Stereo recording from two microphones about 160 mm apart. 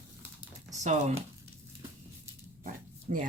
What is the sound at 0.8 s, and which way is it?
Speech, 45° right (ahead or behind).